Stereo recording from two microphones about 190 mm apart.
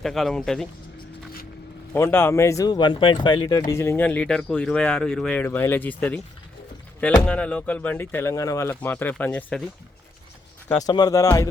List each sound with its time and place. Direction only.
0.0 s speech: centre (ahead or behind)
1.9 s speech: 10° left (ahead or behind)
7.3 s speech: 5° left (ahead or behind)
10.8 s speech: 20° left (ahead or behind)